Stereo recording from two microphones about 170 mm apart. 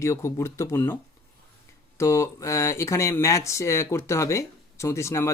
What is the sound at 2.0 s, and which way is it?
Speech, 15° left (ahead or behind).